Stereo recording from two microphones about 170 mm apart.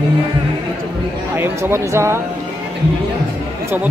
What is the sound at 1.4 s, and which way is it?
Speech, 15° right (ahead or behind).